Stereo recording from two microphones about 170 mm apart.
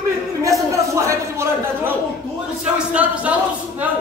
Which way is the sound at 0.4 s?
20° right (ahead or behind).